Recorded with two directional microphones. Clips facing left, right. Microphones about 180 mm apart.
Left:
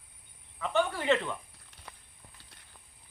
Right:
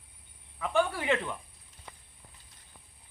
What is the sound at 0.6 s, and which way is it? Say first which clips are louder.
Speech: right 1 dB; 10° right (ahead or behind).